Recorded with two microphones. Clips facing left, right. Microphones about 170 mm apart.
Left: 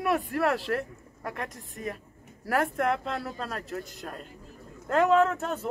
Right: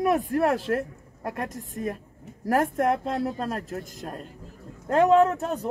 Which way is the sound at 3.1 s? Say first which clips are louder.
Right 7 dB; 20° right (ahead or behind).